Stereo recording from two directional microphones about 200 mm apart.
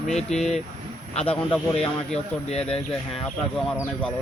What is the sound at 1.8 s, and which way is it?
Speech, 5° left (ahead or behind).